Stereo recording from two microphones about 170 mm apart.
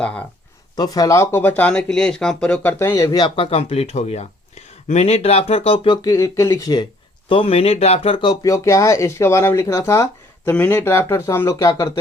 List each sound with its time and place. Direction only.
0.0 s speech: 5° left (ahead or behind)
0.8 s speech: 20° left (ahead or behind)
7.3 s speech: 30° left (ahead or behind)